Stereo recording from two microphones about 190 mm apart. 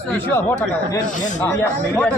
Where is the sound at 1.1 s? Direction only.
40° left (ahead or behind).